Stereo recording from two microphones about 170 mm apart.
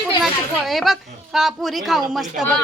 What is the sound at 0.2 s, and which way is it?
Speech, centre (ahead or behind).